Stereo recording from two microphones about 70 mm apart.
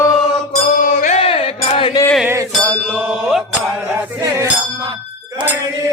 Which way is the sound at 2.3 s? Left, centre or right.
Right.